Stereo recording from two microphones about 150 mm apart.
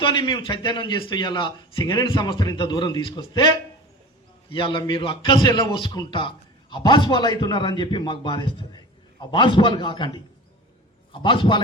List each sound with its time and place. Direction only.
0.0 s a man's voice: 30° left (ahead or behind)